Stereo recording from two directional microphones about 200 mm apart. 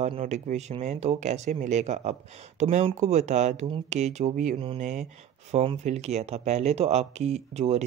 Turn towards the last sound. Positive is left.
turn(degrees=-30)  # may be behind; listen again after turning